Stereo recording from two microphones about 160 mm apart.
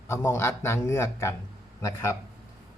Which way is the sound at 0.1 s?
15° left (ahead or behind).